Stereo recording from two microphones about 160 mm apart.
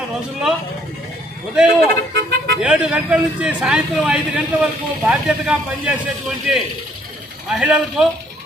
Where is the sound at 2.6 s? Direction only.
5° right (ahead or behind).